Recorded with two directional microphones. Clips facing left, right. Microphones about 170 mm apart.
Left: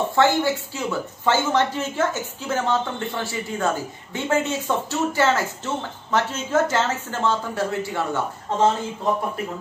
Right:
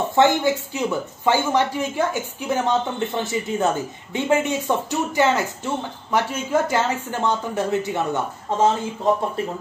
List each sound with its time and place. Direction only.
0.1 s a woman's voice: 20° right (ahead or behind)